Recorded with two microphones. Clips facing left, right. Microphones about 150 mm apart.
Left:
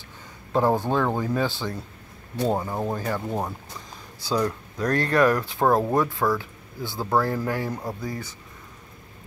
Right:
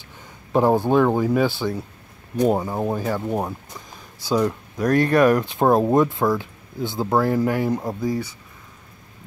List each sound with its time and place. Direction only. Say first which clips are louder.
0.5 s speech: right 4 dB; 15° right (ahead or behind)